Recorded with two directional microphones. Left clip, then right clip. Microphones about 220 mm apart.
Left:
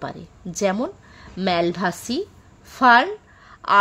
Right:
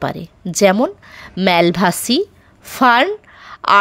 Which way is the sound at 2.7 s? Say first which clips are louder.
Right 3 dB; 35° right (ahead or behind).